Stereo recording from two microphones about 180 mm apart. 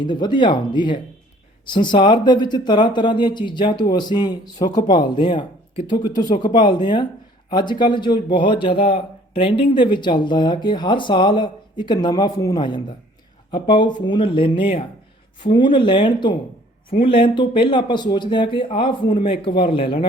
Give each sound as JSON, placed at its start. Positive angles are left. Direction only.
{"t": 0.0, "sound": "speech", "side_deg": 25}